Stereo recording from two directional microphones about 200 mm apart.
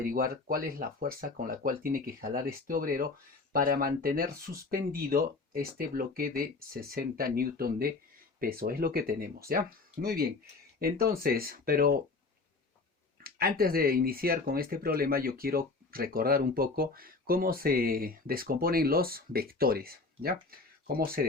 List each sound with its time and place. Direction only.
0.0 s speech: 45° right (ahead or behind)
13.2 s speech: 50° right (ahead or behind)